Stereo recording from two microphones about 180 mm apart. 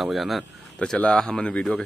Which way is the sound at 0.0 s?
Centre (ahead or behind).